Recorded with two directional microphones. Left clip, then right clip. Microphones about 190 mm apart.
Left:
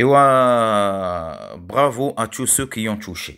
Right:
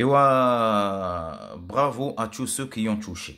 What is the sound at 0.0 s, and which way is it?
Speech, 30° left (ahead or behind).